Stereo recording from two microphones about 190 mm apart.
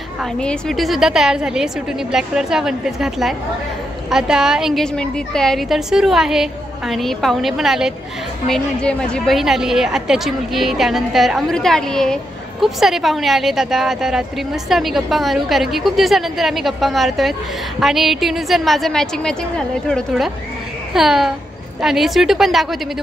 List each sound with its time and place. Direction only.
0.2 s a woman's voice: 5° left (ahead or behind)